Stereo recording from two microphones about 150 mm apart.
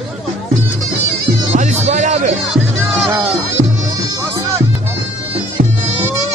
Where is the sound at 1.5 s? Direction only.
55° right (ahead or behind).